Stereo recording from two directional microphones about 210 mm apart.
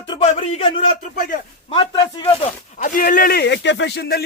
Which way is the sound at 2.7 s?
40° left (ahead or behind).